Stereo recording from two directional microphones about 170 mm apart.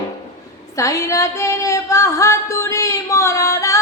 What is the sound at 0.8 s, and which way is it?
Female singing, 20° left (ahead or behind).